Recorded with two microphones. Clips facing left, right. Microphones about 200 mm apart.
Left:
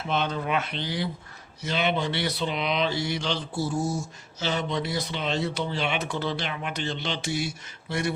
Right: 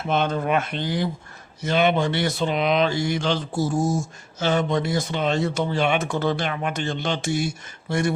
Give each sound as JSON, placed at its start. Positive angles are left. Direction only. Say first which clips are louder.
{"t": 0.0, "sound": "speech", "louder": "right 5 dB", "side_deg": -50}